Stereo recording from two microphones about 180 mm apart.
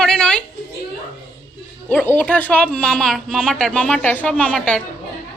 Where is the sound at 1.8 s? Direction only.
10° left (ahead or behind).